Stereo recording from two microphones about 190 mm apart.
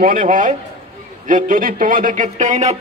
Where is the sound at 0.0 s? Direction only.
45° right (ahead or behind).